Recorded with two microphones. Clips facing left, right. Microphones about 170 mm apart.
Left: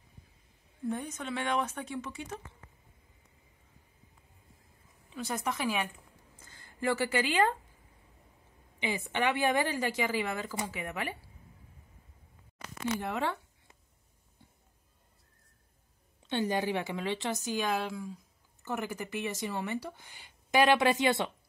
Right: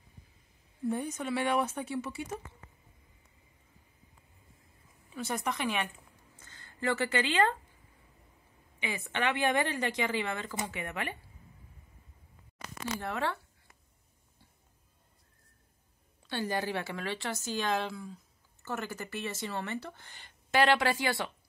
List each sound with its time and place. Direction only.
0.8 s speech: 10° right (ahead or behind)
5.1 s speech: centre (ahead or behind)
8.8 s speech: 15° left (ahead or behind)
13.0 s a sound: 15° left (ahead or behind)
16.2 s a woman's voice: 20° left (ahead or behind)